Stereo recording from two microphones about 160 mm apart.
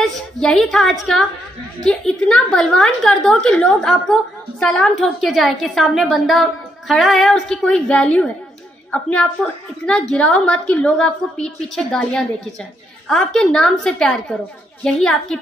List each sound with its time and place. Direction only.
0.0 s a woman's voice: 5° left (ahead or behind)